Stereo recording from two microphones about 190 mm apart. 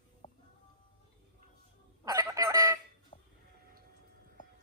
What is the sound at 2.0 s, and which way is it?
Chicken, 20° right (ahead or behind).